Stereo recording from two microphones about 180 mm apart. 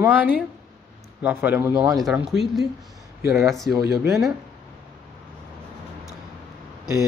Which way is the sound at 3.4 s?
Centre (ahead or behind).